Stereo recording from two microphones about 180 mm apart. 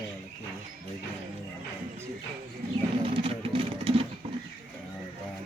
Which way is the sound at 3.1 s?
30° right (ahead or behind).